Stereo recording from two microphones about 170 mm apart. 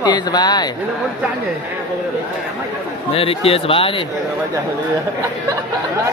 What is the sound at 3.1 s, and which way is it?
Speech, 35° left (ahead or behind).